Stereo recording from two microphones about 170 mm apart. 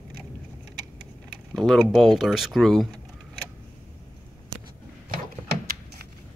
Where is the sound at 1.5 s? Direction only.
Centre (ahead or behind).